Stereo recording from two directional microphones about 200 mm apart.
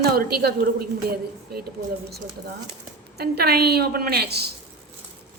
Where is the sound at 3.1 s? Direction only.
50° right (ahead or behind).